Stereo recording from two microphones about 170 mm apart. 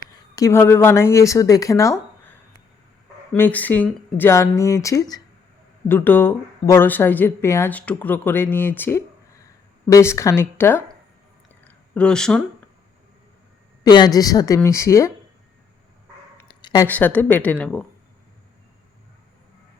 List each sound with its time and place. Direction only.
0.3 s speech: 15° left (ahead or behind)
3.3 s speech: 10° left (ahead or behind)
11.6 s a sound: 5° left (ahead or behind)
13.8 s a woman's voice: 25° left (ahead or behind)
16.5 s a sound: 25° left (ahead or behind)
16.8 s speech: 10° left (ahead or behind)